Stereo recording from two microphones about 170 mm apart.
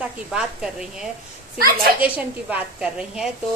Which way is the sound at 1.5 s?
60° right (ahead or behind).